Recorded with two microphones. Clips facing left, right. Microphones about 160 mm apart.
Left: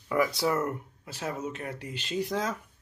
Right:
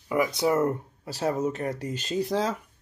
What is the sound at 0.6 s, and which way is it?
Speech, 35° right (ahead or behind).